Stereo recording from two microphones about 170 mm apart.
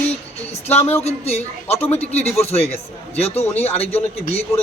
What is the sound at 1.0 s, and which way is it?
A man's voice, 35° left (ahead or behind).